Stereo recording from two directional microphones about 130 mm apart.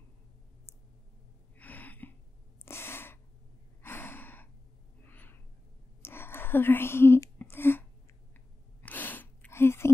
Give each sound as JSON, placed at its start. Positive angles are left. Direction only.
{"t": 1.6, "sound": "a sound", "side_deg": 15}
{"t": 2.6, "sound": "gasp", "side_deg": 20}
{"t": 6.0, "sound": "whispering", "side_deg": 20}
{"t": 8.8, "sound": "gasp", "side_deg": 15}